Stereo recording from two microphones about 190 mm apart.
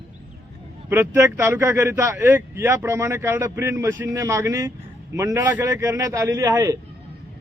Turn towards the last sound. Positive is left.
turn(degrees=-15)  # may be behind; listen again after turning